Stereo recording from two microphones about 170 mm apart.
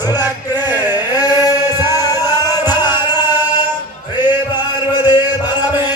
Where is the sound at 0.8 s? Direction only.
25° left (ahead or behind).